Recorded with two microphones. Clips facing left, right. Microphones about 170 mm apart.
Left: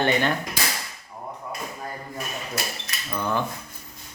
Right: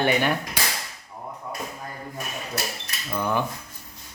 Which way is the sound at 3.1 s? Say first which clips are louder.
Right 1 dB; 15° right (ahead or behind).